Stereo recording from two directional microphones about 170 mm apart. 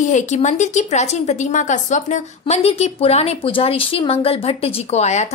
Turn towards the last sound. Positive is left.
turn(degrees=40)  # may be behind; listen again after turning